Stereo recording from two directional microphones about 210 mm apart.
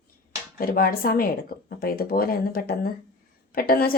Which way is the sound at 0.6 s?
45° left (ahead or behind).